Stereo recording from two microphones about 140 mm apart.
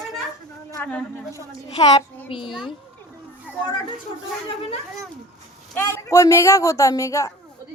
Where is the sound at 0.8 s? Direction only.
10° left (ahead or behind).